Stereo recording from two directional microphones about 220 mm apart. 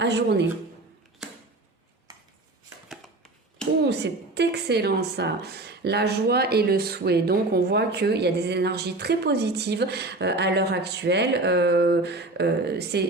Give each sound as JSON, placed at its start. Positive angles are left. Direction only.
{"t": 0.0, "sound": "speech", "side_deg": -50}
{"t": 2.9, "sound": "a sound", "side_deg": 0}
{"t": 3.8, "sound": "a woman's voice", "side_deg": -50}